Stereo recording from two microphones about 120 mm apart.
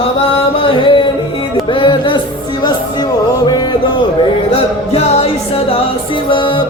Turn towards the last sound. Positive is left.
turn(degrees=55)  # may be behind; listen again after turning